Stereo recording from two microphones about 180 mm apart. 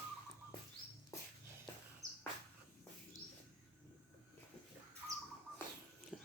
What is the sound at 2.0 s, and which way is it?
Bird, 20° right (ahead or behind).